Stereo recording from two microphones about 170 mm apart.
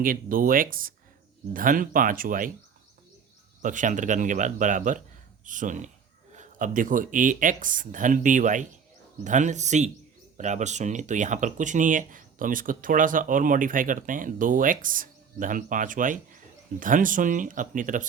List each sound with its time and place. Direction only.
0.0 s speech: 55° right (ahead or behind)
3.6 s speech: 50° right (ahead or behind)